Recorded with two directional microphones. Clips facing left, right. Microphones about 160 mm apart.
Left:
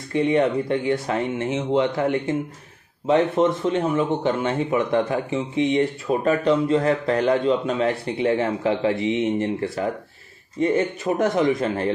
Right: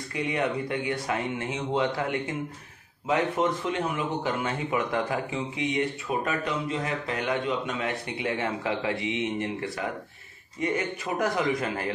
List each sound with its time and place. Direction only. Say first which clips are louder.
0.1 s speech: left 9 dB; 25° left (ahead or behind)